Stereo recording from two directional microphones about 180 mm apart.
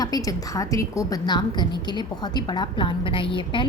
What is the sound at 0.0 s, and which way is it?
A woman's voice, 20° left (ahead or behind).